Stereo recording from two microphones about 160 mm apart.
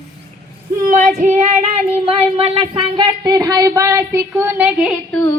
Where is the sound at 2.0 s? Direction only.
35° right (ahead or behind); by 4.9 s 5° right (ahead or behind).